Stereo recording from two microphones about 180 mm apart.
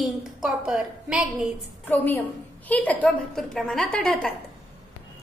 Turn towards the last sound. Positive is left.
turn(degrees=5)  # may be behind; listen again after turning